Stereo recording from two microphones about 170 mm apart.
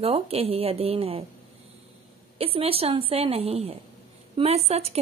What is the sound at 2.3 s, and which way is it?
A woman's voice, 35° right (ahead or behind).